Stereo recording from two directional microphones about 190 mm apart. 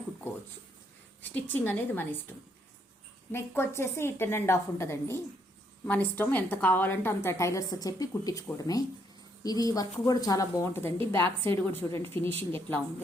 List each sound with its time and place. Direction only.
1.2 s a woman's voice: 10° left (ahead or behind)
3.3 s a woman's voice: 15° left (ahead or behind)